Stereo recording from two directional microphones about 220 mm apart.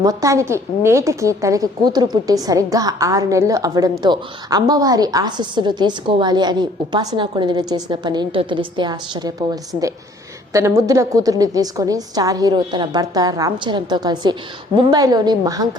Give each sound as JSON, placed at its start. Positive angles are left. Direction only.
{"t": 0.0, "sound": "a woman's voice", "side_deg": -15}